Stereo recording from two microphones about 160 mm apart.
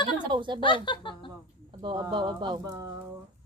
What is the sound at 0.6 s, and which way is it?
Speech, 30° left (ahead or behind).